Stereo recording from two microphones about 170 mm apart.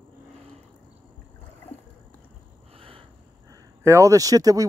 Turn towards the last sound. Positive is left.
turn(degrees=-20)  # may be behind; listen again after turning